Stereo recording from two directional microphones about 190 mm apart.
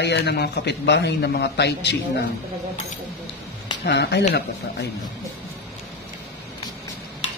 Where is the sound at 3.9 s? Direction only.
60° left (ahead or behind).